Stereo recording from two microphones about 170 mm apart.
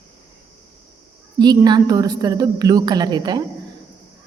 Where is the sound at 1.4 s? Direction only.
25° right (ahead or behind).